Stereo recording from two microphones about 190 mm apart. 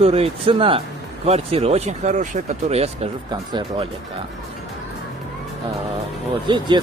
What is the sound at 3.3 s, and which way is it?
Speech, 25° right (ahead or behind).